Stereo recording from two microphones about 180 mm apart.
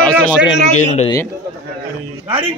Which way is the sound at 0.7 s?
40° left (ahead or behind).